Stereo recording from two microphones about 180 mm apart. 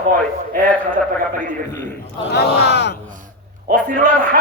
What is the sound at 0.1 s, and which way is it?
Speech, 50° right (ahead or behind).